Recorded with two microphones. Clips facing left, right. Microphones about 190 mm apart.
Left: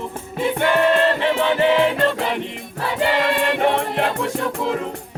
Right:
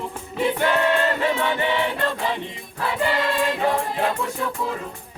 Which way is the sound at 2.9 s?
80° left.